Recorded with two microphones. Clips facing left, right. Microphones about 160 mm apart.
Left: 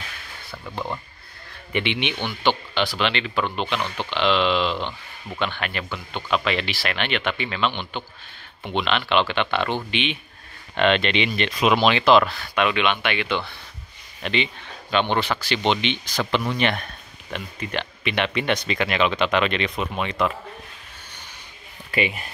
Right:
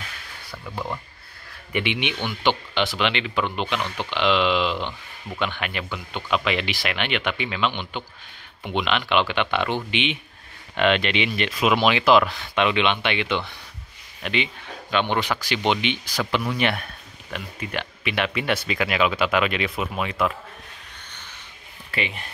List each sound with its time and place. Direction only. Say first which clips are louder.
0.7 s speech: left 1 dB; centre (ahead or behind)
1.7 s speech: left 1 dB; 10° right (ahead or behind)
3.6 s speech: even; 15° left (ahead or behind)
4.1 s speech: even; 15° right (ahead or behind)
14.2 s speech: left 1 dB; 5° right (ahead or behind)
21.9 s speech: left 5 dB; 10° left (ahead or behind)